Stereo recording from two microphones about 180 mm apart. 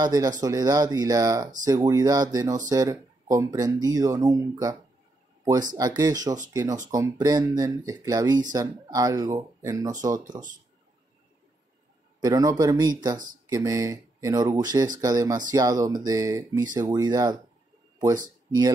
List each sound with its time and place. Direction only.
0.0 s speech: 20° right (ahead or behind)
12.2 s speech: 20° right (ahead or behind)